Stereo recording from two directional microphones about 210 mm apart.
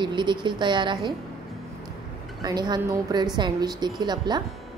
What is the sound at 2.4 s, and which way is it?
A woman's voice, 20° right (ahead or behind).